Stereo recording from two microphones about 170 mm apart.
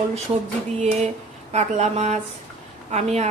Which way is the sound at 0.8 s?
40° right (ahead or behind).